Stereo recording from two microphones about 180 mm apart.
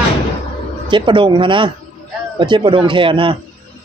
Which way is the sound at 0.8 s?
25° right (ahead or behind).